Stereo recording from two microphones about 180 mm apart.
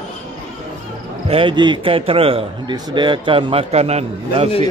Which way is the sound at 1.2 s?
30° right (ahead or behind).